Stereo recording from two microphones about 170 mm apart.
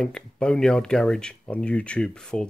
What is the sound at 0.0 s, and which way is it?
Speech, 5° left (ahead or behind).